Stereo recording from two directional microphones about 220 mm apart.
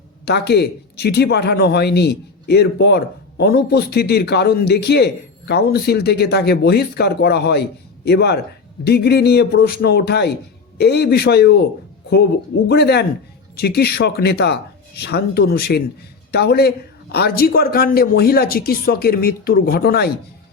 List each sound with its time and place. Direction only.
0.3 s speech: 50° left (ahead or behind)